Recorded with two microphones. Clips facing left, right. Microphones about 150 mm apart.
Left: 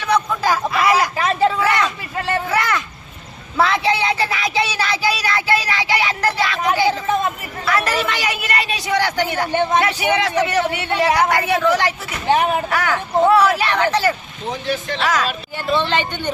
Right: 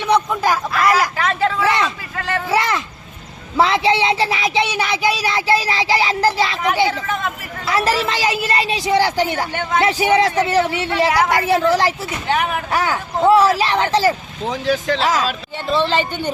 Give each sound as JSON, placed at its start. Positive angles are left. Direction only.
{"t": 0.0, "sound": "a sound", "side_deg": -20}
{"t": 0.4, "sound": "speech", "side_deg": 0}
{"t": 1.1, "sound": "a sound", "side_deg": 20}
{"t": 1.6, "sound": "a sound", "side_deg": -25}
{"t": 3.6, "sound": "a woman's voice", "side_deg": -25}
{"t": 12.3, "sound": "speech", "side_deg": 25}
{"t": 12.7, "sound": "a woman's voice", "side_deg": -20}
{"t": 14.4, "sound": "speech", "side_deg": -90}
{"t": 15.0, "sound": "a woman's voice", "side_deg": -25}
{"t": 15.6, "sound": "speech", "side_deg": 0}